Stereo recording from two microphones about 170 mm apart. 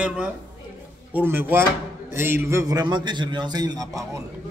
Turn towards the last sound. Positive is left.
turn(degrees=-20)  # may be behind; listen again after turning